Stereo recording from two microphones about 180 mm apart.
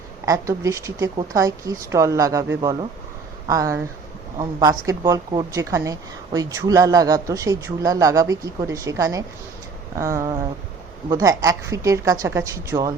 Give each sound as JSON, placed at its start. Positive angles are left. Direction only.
{"t": 0.3, "sound": "a woman's voice", "side_deg": -15}